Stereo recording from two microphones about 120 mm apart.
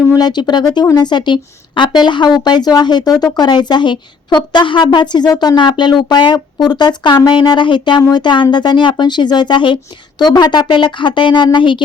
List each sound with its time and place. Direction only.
0.1 s a woman's voice: 35° left (ahead or behind)